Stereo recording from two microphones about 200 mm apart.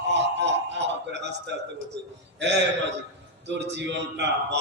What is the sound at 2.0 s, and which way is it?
A man's voice, 60° right (ahead or behind).